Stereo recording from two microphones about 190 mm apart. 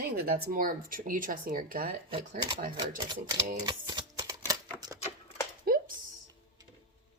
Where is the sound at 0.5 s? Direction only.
50° right (ahead or behind).